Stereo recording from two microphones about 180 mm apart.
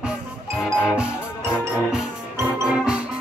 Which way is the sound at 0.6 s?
5° left (ahead or behind).